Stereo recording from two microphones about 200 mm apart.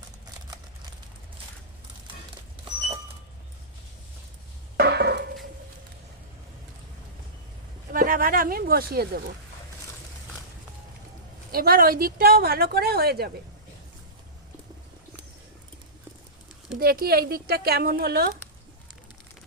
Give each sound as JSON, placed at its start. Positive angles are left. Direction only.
{"t": 4.8, "sound": "a sound", "side_deg": -55}
{"t": 7.9, "sound": "speech", "side_deg": -45}
{"t": 11.5, "sound": "speech", "side_deg": -45}
{"t": 16.7, "sound": "speech", "side_deg": -50}